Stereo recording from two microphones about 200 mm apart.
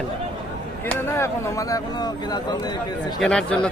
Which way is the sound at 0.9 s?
15° left (ahead or behind).